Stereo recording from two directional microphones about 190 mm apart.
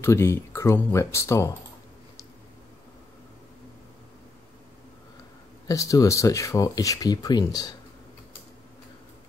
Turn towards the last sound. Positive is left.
turn(degrees=20)  # may be behind; listen again after turning